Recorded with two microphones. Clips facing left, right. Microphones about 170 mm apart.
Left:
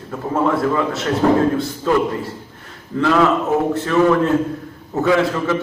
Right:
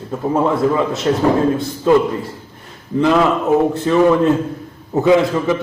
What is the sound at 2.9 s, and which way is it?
A man's voice, 20° right (ahead or behind).